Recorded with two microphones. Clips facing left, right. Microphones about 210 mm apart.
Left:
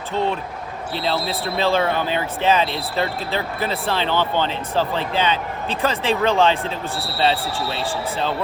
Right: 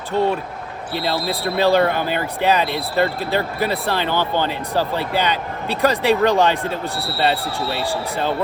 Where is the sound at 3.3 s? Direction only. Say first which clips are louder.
Right 3 dB; 15° right (ahead or behind).